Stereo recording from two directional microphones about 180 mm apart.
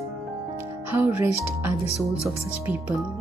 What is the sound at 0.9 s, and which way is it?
Speech, 15° right (ahead or behind).